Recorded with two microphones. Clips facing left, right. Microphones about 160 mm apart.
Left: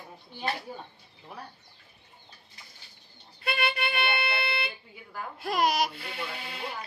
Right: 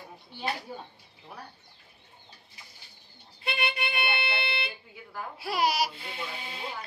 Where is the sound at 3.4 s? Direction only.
20° right (ahead or behind).